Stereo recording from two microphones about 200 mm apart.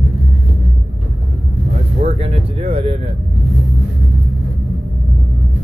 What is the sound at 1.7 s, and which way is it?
Vehicle, 30° right (ahead or behind).